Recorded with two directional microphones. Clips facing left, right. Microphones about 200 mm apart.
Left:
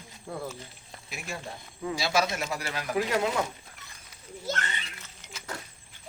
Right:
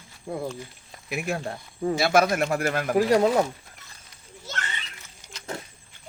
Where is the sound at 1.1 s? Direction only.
60° right (ahead or behind).